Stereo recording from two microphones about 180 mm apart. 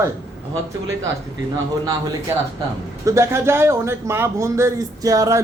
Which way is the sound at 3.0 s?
15° right (ahead or behind).